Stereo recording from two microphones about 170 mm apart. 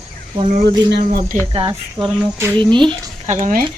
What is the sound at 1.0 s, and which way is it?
Speech, 50° right (ahead or behind).